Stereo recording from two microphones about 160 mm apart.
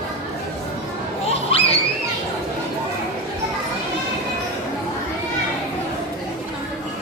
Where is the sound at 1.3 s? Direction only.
40° left (ahead or behind).